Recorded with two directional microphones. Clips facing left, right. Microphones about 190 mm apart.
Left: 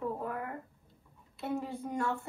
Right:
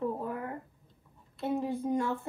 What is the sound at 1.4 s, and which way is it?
Speech, 20° right (ahead or behind).